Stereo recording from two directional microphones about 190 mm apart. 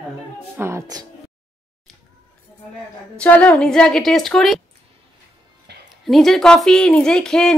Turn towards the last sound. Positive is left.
turn(degrees=5)  # may be behind; listen again after turning